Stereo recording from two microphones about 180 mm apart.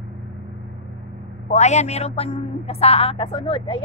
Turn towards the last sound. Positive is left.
turn(degrees=30)  # may be behind; listen again after turning